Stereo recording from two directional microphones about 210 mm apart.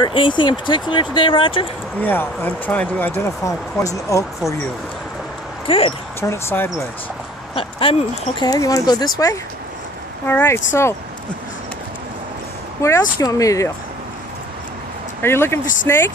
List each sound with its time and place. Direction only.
0.0 s speech: 25° left (ahead or behind)
2.0 s speech: 10° left (ahead or behind)
5.7 s speech: 25° left (ahead or behind)
6.2 s speech: 10° left (ahead or behind)
7.5 s speech: 25° left (ahead or behind)
10.2 s speech: 10° left (ahead or behind)
13.2 s speech: 15° left (ahead or behind)
15.2 s speech: 10° left (ahead or behind)